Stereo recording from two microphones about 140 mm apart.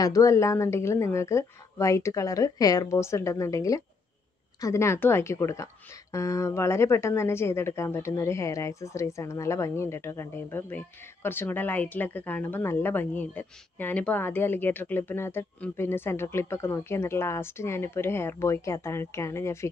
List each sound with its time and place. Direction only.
0.0 s speech: 25° left (ahead or behind)